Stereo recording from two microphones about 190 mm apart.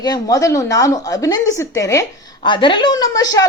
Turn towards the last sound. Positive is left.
turn(degrees=20)  # may be behind; listen again after turning